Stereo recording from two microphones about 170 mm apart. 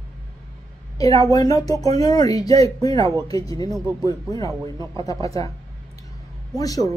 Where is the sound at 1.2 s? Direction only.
20° left (ahead or behind).